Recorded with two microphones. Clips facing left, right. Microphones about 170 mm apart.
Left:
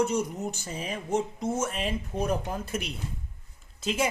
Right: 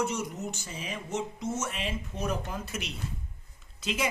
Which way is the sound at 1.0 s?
30° left (ahead or behind).